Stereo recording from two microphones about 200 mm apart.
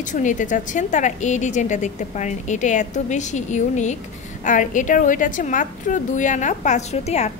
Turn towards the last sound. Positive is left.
turn(degrees=35)  # may be behind; listen again after turning